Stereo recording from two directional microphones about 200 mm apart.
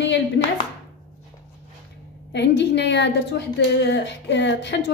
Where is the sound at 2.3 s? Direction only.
60° left (ahead or behind).